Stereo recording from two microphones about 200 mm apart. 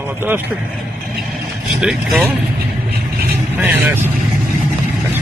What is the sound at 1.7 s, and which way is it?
Speech, 5° right (ahead or behind).